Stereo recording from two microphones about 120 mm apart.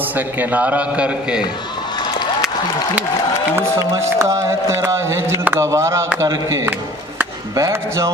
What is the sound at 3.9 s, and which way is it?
A man's voice, 25° right (ahead or behind).